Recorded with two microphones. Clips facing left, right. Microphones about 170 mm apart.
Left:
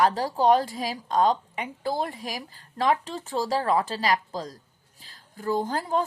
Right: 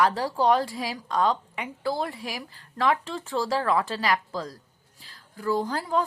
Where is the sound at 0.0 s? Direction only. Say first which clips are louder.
Left 1 dB; 40° left (ahead or behind).